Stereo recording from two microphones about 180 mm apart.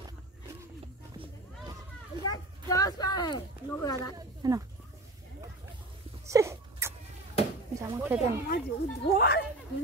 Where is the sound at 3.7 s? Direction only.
15° left (ahead or behind).